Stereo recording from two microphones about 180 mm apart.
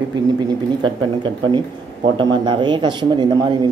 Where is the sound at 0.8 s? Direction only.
25° right (ahead or behind).